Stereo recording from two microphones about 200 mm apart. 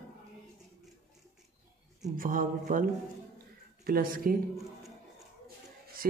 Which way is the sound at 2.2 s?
45° right (ahead or behind).